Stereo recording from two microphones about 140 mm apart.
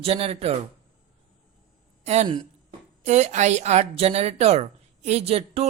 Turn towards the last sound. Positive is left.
turn(degrees=-45)  # may be behind; listen again after turning